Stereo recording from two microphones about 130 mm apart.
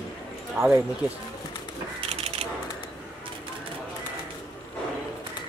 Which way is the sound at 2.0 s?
50° right (ahead or behind).